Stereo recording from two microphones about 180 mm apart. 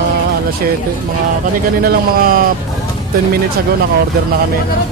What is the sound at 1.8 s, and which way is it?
Speech, 55° right (ahead or behind).